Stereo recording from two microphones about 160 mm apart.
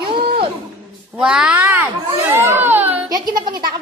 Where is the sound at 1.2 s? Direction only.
5° right (ahead or behind).